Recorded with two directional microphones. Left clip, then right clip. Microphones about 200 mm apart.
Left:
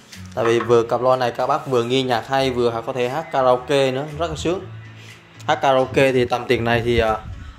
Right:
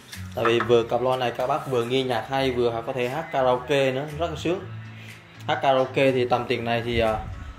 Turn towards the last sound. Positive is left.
turn(degrees=40)  # may be behind; listen again after turning